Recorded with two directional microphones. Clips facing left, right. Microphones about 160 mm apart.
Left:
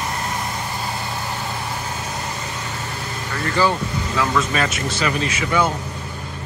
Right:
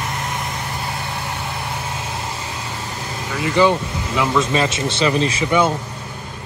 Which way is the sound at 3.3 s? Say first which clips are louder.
Right 4 dB; 10° right (ahead or behind).